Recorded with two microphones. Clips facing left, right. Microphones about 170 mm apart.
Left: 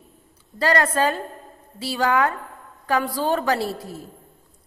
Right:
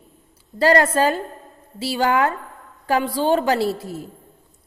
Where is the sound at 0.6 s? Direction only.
30° right (ahead or behind).